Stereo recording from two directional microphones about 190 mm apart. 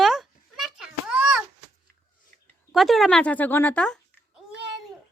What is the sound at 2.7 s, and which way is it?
A child's voice, centre (ahead or behind).